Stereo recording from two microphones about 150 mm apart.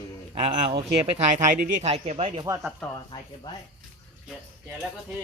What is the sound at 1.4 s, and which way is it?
Speech, 65° right (ahead or behind).